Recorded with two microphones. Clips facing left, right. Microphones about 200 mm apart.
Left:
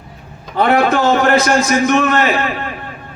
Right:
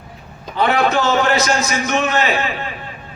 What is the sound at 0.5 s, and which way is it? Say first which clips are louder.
A man's voice: left 3 dB; 50° left (ahead or behind).